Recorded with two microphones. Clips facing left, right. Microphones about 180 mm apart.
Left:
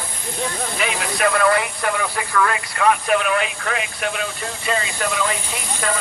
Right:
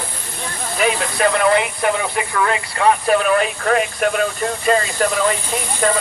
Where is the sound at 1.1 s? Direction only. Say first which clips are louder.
Right 1 dB; 25° right (ahead or behind).